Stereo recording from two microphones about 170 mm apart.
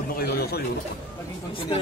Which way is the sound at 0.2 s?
65° left (ahead or behind).